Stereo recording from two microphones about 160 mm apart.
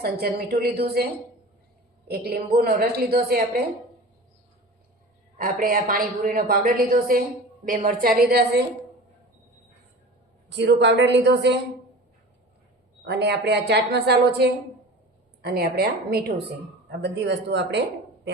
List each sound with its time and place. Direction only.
0.0 s a woman's voice: 75° right (ahead or behind)
2.0 s a woman's voice: 80° right
5.4 s a woman's voice: 60° right (ahead or behind)
10.8 s a woman's voice: 90° right
13.1 s a woman's voice: 90° right
15.4 s a woman's voice: 80° right
17.0 s a woman's voice: 90° right